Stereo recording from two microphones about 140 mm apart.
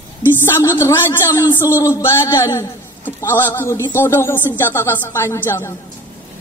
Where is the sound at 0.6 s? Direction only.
20° left (ahead or behind).